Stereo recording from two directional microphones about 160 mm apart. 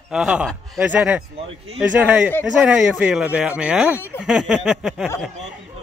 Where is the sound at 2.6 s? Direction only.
5° right (ahead or behind).